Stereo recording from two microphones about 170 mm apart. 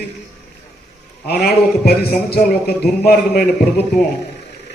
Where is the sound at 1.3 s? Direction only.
65° left (ahead or behind).